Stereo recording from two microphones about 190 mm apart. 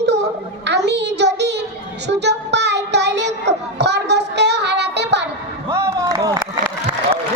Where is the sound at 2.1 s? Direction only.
65° right (ahead or behind).